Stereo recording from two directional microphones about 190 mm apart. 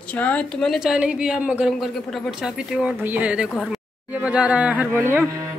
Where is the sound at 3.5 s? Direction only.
5° left (ahead or behind).